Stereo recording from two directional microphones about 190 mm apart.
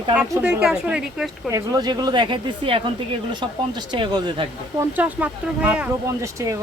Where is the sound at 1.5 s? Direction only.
20° right (ahead or behind).